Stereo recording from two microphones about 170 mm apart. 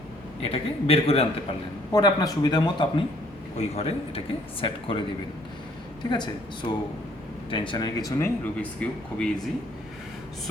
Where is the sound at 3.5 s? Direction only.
40° left (ahead or behind).